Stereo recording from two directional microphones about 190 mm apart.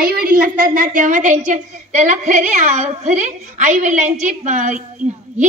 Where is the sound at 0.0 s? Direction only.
50° right (ahead or behind).